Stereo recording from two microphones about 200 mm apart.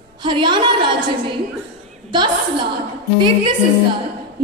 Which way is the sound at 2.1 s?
25° right (ahead or behind).